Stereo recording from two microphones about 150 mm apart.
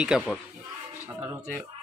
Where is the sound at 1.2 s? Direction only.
20° right (ahead or behind).